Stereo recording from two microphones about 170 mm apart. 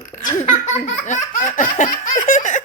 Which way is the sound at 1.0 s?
50° left (ahead or behind).